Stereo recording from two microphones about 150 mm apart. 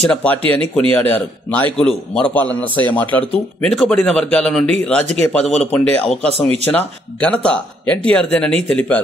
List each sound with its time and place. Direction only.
0.0 s a man's voice: 5° left (ahead or behind)